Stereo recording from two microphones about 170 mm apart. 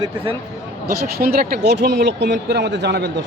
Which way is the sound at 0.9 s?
60° right (ahead or behind).